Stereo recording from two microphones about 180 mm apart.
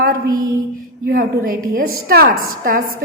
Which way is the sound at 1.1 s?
55° right (ahead or behind).